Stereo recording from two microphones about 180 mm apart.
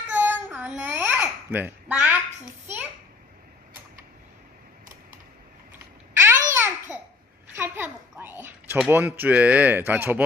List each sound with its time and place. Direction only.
0.1 s babbling: 10° right (ahead or behind)
6.1 s babbling: 15° right (ahead or behind)
7.5 s a sound: 10° right (ahead or behind)
8.9 s speech: 10° right (ahead or behind)